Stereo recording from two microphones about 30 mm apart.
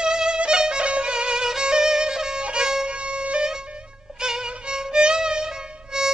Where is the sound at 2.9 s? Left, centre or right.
Right.